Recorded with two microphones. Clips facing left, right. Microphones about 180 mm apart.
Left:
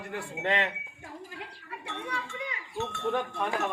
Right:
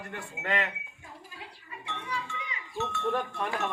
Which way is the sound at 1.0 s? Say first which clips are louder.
Left 6 dB; 65° left (ahead or behind).